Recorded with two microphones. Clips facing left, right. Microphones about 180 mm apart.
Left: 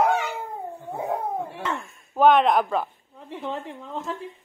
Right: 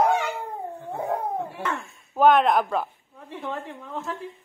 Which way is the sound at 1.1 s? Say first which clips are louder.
Even; centre (ahead or behind).